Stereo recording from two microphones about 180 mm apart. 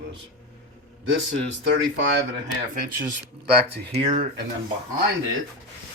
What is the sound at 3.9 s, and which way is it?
Speech, 35° right (ahead or behind).